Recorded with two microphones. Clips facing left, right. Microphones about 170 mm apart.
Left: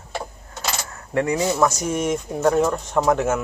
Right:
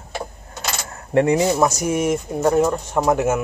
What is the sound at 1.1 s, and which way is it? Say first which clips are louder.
Speech: right 5 dB; 25° right (ahead or behind).